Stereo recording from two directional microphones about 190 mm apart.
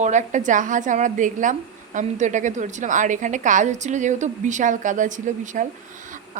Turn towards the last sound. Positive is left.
turn(degrees=-40)  # may be behind; listen again after turning